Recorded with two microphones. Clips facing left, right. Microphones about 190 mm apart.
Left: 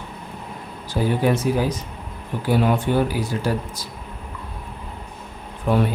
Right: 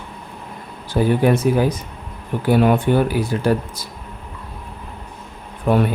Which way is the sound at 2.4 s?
55° right (ahead or behind).